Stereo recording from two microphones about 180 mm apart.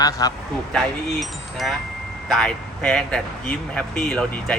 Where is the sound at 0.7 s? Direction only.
Centre (ahead or behind).